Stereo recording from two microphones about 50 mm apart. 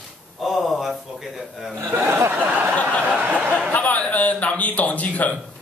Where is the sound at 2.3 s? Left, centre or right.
Right.